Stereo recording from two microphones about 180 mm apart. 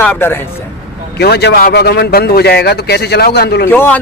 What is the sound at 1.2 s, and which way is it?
A man's voice, 65° left (ahead or behind).